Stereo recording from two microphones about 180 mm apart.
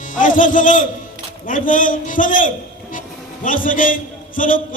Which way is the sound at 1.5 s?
50° left (ahead or behind).